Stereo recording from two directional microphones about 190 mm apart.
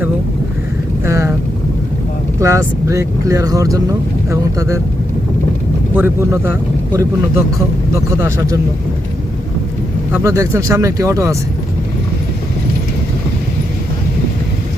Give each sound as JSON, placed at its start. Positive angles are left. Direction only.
{"t": 1.0, "sound": "vehicle", "side_deg": -15}
{"t": 2.4, "sound": "speech", "side_deg": -15}
{"t": 5.9, "sound": "speech", "side_deg": -10}
{"t": 10.1, "sound": "speech", "side_deg": -15}